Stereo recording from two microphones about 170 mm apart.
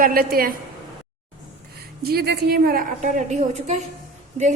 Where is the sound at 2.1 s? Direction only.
70° right (ahead or behind).